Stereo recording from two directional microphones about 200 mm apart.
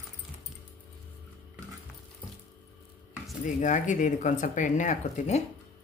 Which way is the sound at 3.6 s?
40° left (ahead or behind).